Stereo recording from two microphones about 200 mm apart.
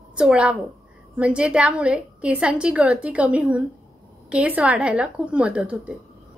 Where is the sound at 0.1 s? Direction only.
5° right (ahead or behind).